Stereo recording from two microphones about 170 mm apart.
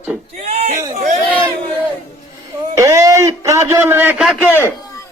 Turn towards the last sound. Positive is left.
turn(degrees=0)  # may be behind; listen again after turning